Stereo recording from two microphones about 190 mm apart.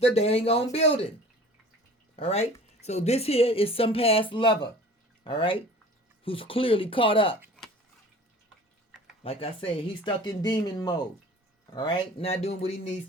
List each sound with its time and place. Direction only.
0.0 s a woman's voice: 35° left (ahead or behind)
2.1 s a woman's voice: 30° left (ahead or behind)
9.2 s a woman's voice: 30° left (ahead or behind)